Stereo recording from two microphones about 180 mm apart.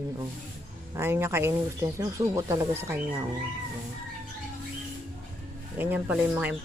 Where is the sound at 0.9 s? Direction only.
15° right (ahead or behind).